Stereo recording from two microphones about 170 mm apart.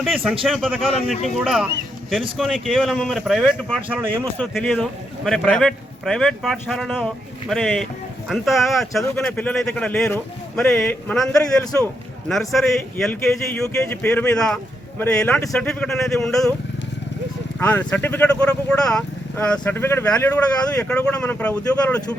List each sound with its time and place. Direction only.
0.0 s a man's voice: 5° right (ahead or behind)
2.4 s a man's voice: centre (ahead or behind)
17.6 s speech: 10° left (ahead or behind)